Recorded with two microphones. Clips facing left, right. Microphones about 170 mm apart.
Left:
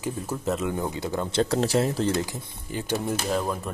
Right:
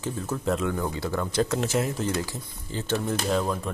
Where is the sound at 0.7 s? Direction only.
20° left (ahead or behind).